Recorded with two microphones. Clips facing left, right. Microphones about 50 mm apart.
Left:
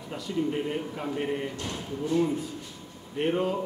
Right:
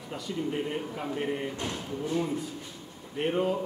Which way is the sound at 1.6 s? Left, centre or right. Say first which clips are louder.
Even; right.